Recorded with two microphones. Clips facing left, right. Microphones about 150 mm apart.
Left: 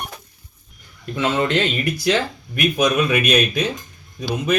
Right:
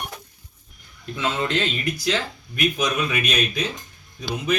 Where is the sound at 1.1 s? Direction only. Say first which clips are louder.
Left 5 dB; 60° left (ahead or behind).